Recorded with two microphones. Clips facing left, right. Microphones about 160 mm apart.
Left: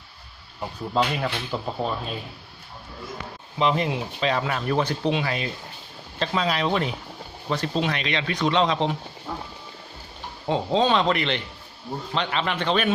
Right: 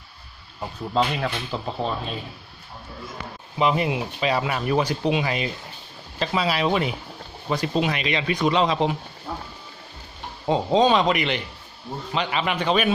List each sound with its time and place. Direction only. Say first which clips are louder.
0.9 s speech: right 1 dB; centre (ahead or behind)
3.5 s speech: right 1 dB; 10° right (ahead or behind)
6.1 s speech: right 1 dB; 5° right (ahead or behind)
10.4 s speech: right 3 dB; 15° right (ahead or behind)